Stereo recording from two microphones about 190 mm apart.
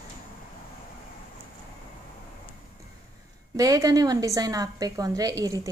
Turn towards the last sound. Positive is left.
turn(degrees=-20)  # may be behind; listen again after turning